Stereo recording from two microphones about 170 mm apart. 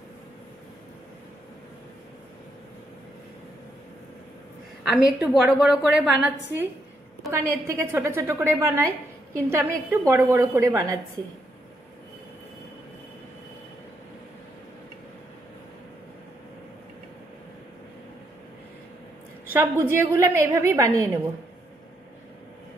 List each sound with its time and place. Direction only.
4.8 s a woman's voice: centre (ahead or behind); by 11.0 s 20° right (ahead or behind)
19.5 s a woman's voice: 15° right (ahead or behind)